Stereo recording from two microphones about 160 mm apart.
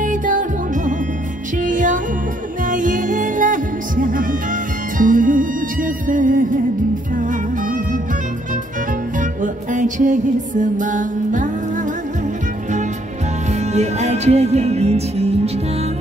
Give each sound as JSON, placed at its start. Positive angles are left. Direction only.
{"t": 0.0, "sound": "music", "side_deg": -55}
{"t": 9.2, "sound": "music", "side_deg": -55}
{"t": 13.5, "sound": "music", "side_deg": -45}